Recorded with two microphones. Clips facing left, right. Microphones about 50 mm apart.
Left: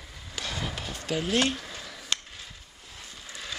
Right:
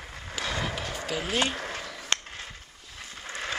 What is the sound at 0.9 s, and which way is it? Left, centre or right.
Speech, centre.